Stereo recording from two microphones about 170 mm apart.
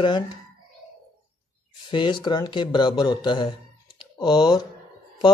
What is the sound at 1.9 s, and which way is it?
Speech, 30° left (ahead or behind).